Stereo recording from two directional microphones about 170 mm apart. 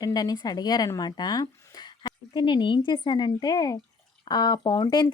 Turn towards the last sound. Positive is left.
turn(degrees=25)  # may be behind; listen again after turning